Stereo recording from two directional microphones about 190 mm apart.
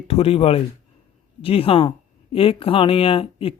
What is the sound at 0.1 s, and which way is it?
A man's voice, 30° left (ahead or behind).